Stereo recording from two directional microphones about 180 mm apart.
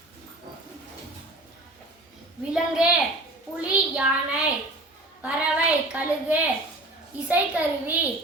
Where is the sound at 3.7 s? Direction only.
5° right (ahead or behind).